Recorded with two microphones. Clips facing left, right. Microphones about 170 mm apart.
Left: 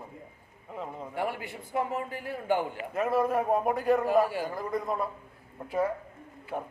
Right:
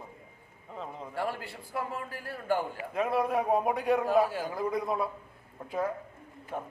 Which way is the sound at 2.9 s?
5° left (ahead or behind).